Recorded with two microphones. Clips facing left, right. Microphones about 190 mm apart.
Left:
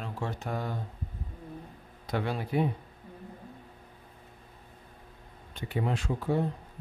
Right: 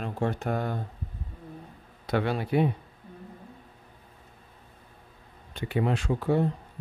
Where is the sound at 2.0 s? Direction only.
70° right (ahead or behind).